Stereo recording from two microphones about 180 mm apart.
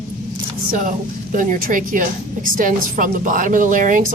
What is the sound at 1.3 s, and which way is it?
Speech, 50° right (ahead or behind).